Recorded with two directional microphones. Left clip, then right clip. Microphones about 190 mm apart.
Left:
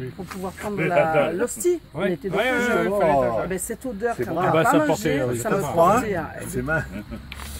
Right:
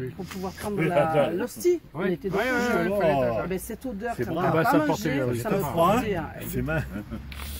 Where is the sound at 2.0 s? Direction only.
65° left (ahead or behind).